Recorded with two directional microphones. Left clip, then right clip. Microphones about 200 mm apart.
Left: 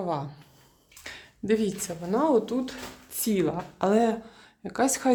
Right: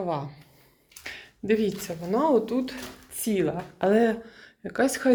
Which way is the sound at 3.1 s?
15° left (ahead or behind).